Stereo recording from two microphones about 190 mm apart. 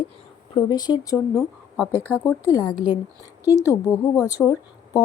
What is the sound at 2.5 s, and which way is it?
Speech, 20° left (ahead or behind).